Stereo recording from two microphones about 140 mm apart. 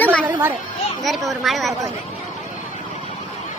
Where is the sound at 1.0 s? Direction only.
Centre (ahead or behind).